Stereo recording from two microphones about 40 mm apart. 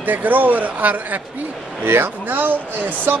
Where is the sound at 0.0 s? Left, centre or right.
Right.